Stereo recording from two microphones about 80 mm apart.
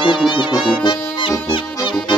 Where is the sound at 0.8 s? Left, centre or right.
Left.